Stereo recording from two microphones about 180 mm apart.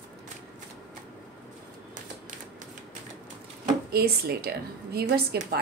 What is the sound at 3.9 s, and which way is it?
A woman's voice, 60° right (ahead or behind).